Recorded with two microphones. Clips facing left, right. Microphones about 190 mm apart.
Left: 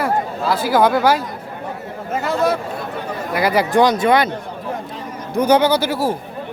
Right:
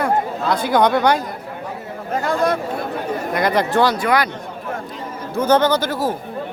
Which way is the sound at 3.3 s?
5° left (ahead or behind).